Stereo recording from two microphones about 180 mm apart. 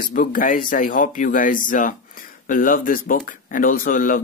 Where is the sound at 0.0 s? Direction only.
50° left (ahead or behind).